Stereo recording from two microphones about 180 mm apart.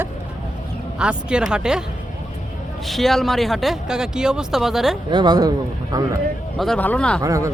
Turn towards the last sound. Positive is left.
turn(degrees=-20)  # may be behind; listen again after turning